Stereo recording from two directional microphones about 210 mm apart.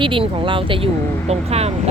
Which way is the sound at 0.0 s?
25° right (ahead or behind).